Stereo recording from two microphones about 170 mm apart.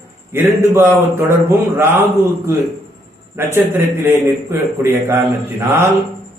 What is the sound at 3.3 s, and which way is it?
A man's voice, 15° right (ahead or behind).